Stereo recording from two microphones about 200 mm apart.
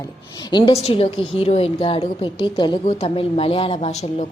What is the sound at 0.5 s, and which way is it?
A woman's voice, 25° left (ahead or behind).